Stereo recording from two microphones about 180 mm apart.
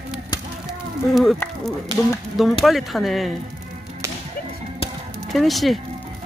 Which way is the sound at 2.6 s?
Centre (ahead or behind).